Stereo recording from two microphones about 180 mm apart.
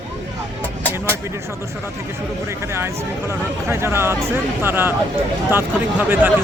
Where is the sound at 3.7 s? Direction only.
15° right (ahead or behind).